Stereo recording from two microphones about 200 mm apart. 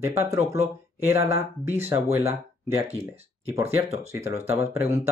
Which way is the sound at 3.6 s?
15° right (ahead or behind).